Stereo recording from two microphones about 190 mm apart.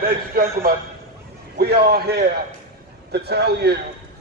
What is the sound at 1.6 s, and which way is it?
A man's voice, 55° right (ahead or behind).